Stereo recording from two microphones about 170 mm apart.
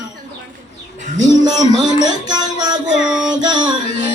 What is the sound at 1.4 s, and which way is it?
Music, 25° right (ahead or behind).